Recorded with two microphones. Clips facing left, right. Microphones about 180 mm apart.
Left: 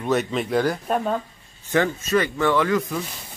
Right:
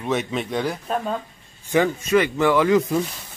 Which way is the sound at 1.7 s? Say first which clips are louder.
Right 2 dB; 15° right (ahead or behind).